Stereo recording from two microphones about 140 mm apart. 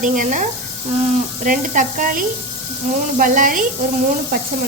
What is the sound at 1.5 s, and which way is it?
Speech, 70° right (ahead or behind).